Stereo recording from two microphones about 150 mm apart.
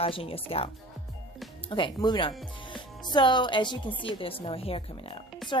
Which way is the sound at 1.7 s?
30° left (ahead or behind).